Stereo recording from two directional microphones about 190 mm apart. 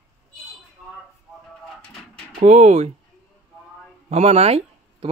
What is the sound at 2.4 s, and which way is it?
Speech, 40° right (ahead or behind).